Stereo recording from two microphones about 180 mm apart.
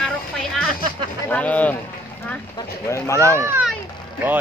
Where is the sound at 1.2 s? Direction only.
10° left (ahead or behind).